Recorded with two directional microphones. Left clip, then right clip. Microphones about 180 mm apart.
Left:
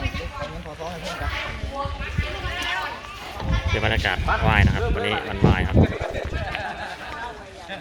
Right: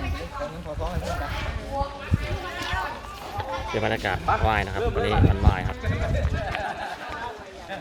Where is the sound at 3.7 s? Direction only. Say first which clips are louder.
Left 3 dB; 5° right (ahead or behind).